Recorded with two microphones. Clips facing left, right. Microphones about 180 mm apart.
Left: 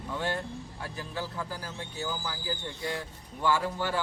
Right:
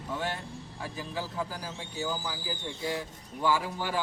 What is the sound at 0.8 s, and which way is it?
Speech, 15° right (ahead or behind).